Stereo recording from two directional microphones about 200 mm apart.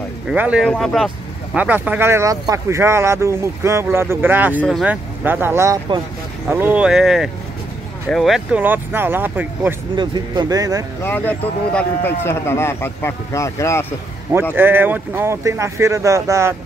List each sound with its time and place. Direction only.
0.3 s speech: 5° right (ahead or behind)
4.6 s speech: centre (ahead or behind)
5.2 s speech: 10° right (ahead or behind)
9.9 s speech: 20° right (ahead or behind)
11.0 s speech: 10° left (ahead or behind)
14.5 s speech: 10° right (ahead or behind)